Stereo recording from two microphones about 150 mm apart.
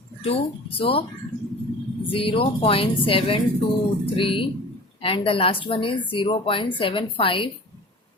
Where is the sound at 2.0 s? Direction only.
35° left (ahead or behind).